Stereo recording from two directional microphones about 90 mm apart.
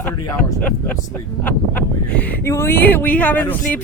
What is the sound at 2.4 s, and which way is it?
Speech, 30° left (ahead or behind).